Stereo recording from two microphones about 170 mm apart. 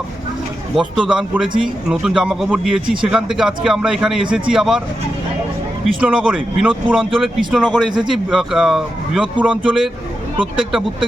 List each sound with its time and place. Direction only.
0.8 s a man's voice: 5° right (ahead or behind)
5.8 s a man's voice: 5° right (ahead or behind)
10.3 s speech: 30° right (ahead or behind)